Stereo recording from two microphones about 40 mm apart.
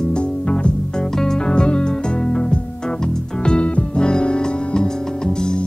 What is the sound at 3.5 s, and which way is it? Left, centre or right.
Music, left.